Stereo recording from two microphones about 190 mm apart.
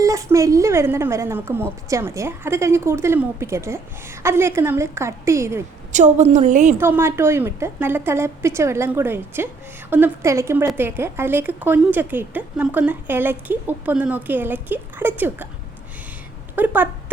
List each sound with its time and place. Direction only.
0.0 s a woman's voice: 15° right (ahead or behind)
5.9 s a woman's voice: 40° right (ahead or behind)
6.7 s a woman's voice: 10° right (ahead or behind)
16.6 s a woman's voice: 10° right (ahead or behind)